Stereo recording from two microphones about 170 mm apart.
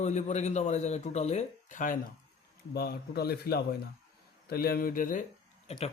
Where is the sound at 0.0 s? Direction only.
45° left (ahead or behind).